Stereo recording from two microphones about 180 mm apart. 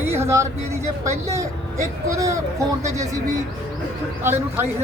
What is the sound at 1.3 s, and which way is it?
Speech, 15° right (ahead or behind).